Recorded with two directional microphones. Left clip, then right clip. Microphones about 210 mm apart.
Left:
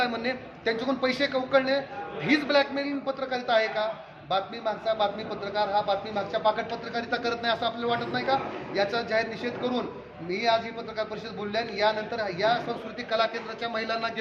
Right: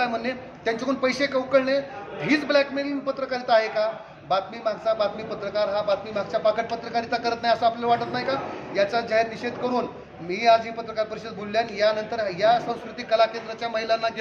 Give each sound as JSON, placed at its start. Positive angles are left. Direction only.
{"t": 0.0, "sound": "a man's voice", "side_deg": -5}